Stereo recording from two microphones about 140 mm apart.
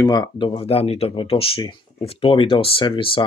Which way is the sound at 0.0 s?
30° left (ahead or behind).